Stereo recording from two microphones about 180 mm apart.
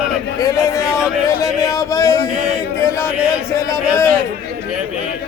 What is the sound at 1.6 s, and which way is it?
Speech, 15° left (ahead or behind).